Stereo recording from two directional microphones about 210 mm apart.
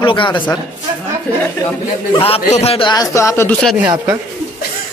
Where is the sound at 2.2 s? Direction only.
30° left (ahead or behind); by 3.6 s 15° left (ahead or behind).